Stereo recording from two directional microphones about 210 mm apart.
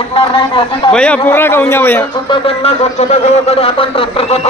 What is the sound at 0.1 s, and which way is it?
Speech, 25° left (ahead or behind).